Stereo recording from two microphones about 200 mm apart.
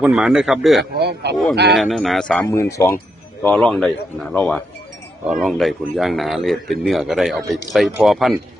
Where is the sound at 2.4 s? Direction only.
15° left (ahead or behind).